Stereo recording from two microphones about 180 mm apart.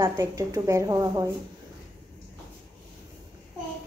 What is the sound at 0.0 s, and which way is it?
A woman's voice, 20° right (ahead or behind).